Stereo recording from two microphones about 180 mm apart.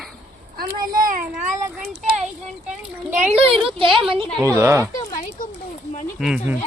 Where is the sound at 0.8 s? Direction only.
50° right (ahead or behind).